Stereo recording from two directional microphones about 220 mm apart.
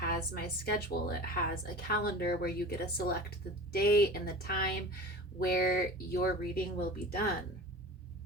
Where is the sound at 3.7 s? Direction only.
45° left (ahead or behind).